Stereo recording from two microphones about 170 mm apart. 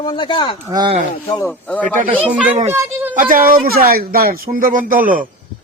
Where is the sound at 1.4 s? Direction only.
10° left (ahead or behind).